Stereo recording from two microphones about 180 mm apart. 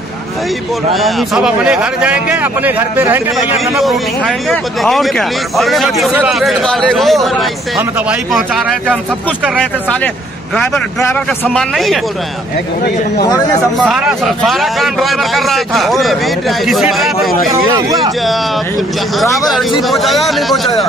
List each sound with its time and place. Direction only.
0.9 s speech: centre (ahead or behind)
3.5 s a man's voice: centre (ahead or behind)
13.7 s a man's voice: centre (ahead or behind)
17.7 s speech: 20° right (ahead or behind)
19.9 s a man's voice: centre (ahead or behind)